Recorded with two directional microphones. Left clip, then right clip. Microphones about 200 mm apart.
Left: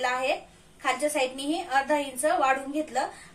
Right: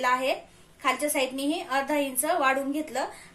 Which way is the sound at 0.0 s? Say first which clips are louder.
Right 2 dB; 40° right (ahead or behind).